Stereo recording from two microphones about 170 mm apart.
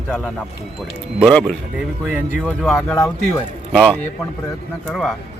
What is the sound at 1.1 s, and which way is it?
A man's voice, centre (ahead or behind).